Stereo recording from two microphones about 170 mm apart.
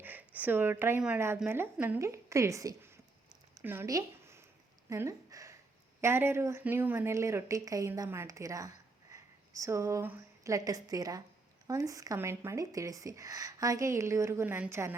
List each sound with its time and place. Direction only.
0.0 s a woman's voice: 10° right (ahead or behind)
4.9 s a sound: 20° right (ahead or behind)
6.0 s a woman's voice: 15° right (ahead or behind)